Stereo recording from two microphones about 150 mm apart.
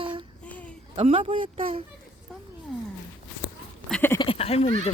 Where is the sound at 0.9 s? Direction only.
40° right (ahead or behind).